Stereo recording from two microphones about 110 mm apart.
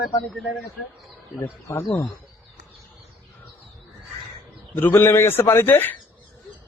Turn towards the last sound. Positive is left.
turn(degrees=20)  # may be behind; listen again after turning